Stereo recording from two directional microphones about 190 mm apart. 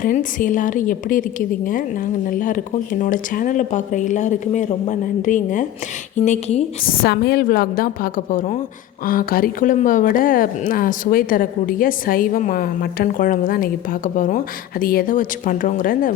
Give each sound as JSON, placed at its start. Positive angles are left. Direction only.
{"t": 0.0, "sound": "a woman's voice", "side_deg": 45}
{"t": 6.8, "sound": "a woman's voice", "side_deg": 50}